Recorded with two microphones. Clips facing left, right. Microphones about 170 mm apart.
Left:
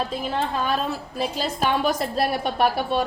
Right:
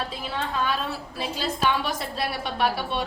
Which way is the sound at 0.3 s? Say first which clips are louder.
Left 2 dB; 45° left (ahead or behind).